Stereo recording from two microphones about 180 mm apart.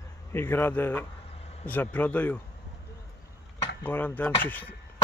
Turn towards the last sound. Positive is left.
turn(degrees=10)  # may be behind; listen again after turning